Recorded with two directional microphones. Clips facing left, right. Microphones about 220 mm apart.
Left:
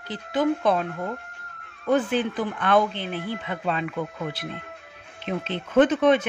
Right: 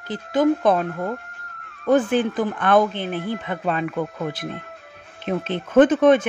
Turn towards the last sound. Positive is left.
turn(degrees=-50)  # may be behind; listen again after turning